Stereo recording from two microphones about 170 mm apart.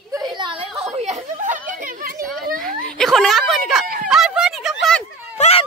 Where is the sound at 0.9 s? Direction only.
40° right (ahead or behind).